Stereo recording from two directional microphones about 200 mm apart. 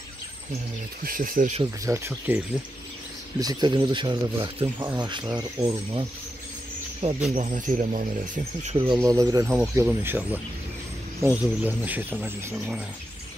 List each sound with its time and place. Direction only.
1.0 s speech: 45° right (ahead or behind)
1.6 s speech: 15° right (ahead or behind)
7.0 s speech: 30° right (ahead or behind)
8.6 s speech: 25° right (ahead or behind); by 12.8 s 5° right (ahead or behind)